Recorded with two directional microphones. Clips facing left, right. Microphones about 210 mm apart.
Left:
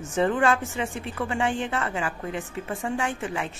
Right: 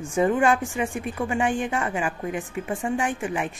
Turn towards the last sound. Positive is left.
turn(degrees=-15)  # may be behind; listen again after turning